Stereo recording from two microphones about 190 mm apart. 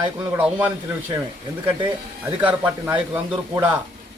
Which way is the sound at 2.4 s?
10° right (ahead or behind).